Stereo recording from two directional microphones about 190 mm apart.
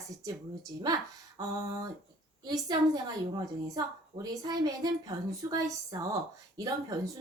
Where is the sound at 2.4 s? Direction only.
20° right (ahead or behind).